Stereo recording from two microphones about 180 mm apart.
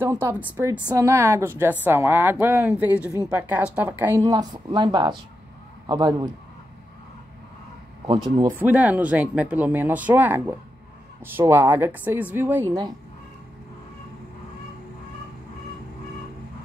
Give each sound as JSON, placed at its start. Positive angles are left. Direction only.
{"t": 0.0, "sound": "a man's voice", "side_deg": -15}
{"t": 8.5, "sound": "speech", "side_deg": -10}